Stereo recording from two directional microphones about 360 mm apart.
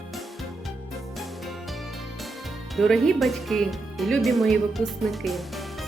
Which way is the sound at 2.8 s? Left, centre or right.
Centre.